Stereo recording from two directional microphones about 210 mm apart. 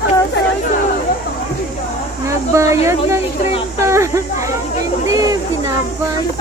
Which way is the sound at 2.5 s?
15° right (ahead or behind).